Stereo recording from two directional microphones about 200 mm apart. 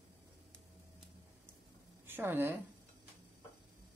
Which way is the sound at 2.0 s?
10° right (ahead or behind).